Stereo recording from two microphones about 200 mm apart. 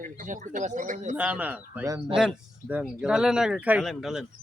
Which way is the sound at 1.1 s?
5° right (ahead or behind).